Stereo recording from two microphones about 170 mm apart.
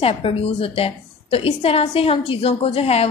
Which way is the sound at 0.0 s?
35° left (ahead or behind).